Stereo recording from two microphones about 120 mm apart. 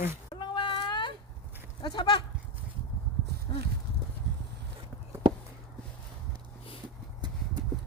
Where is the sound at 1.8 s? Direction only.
40° left (ahead or behind).